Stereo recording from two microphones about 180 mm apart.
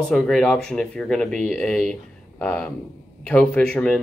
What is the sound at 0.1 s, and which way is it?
Speech, centre (ahead or behind).